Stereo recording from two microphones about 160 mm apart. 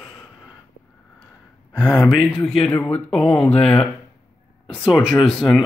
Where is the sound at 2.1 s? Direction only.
Centre (ahead or behind).